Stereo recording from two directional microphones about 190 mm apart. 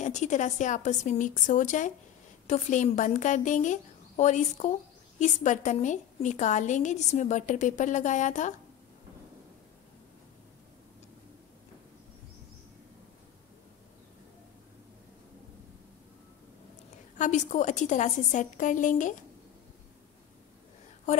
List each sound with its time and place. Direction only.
0.0 s a woman's voice: 40° left (ahead or behind)
17.2 s a woman's voice: 40° left (ahead or behind)